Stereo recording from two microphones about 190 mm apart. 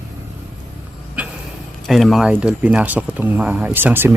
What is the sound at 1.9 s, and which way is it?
Speech, centre (ahead or behind).